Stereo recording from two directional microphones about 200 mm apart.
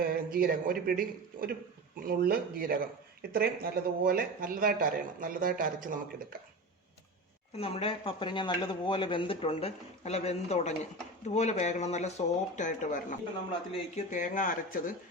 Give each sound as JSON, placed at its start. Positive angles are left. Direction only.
{"t": 0.0, "sound": "speech", "side_deg": -45}
{"t": 7.6, "sound": "speech", "side_deg": 30}